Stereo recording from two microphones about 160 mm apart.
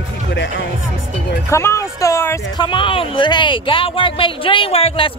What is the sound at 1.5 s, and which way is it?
Speech, 15° left (ahead or behind).